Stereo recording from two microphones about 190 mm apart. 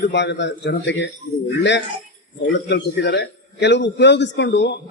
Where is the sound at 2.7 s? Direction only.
60° left (ahead or behind).